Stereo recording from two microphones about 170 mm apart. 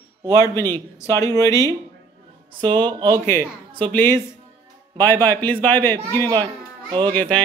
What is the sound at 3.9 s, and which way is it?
Speech, 15° left (ahead or behind).